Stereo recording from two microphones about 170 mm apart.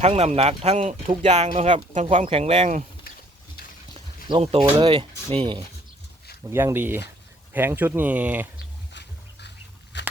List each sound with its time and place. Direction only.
0.0 s speech: 40° right (ahead or behind)
4.3 s speech: 35° right (ahead or behind)
6.5 s speech: 15° right (ahead or behind)
8.9 s music: 90° left
9.9 s a sound: 90° left